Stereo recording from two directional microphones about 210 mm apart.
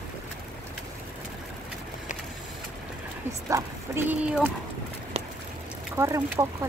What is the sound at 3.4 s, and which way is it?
Speech, 15° right (ahead or behind).